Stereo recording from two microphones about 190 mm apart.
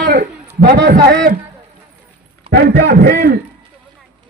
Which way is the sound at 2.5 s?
55° right (ahead or behind).